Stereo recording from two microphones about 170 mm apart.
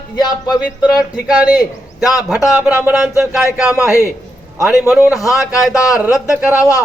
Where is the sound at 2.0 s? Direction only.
20° left (ahead or behind).